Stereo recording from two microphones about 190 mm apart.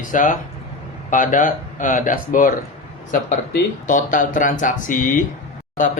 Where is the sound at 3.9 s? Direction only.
45° left (ahead or behind).